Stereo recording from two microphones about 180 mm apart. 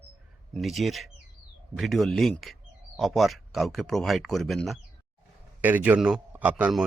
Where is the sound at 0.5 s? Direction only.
Centre (ahead or behind).